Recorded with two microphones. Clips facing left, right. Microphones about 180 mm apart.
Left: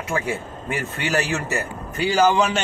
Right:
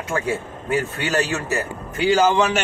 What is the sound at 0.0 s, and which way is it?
Speech, centre (ahead or behind).